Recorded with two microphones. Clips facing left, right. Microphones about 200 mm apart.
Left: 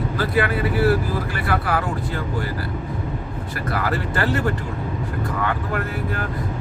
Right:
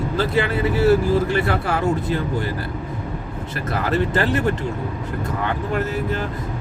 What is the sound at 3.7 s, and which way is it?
Speech, 20° right (ahead or behind).